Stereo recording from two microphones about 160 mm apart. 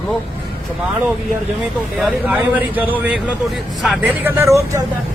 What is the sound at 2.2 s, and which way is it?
Speech, 10° right (ahead or behind).